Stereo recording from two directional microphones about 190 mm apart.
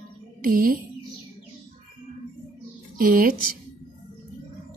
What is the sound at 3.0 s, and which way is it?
Speech, 45° right (ahead or behind).